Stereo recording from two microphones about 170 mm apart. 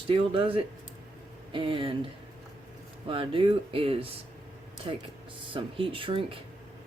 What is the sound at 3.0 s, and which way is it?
Speech, 30° right (ahead or behind).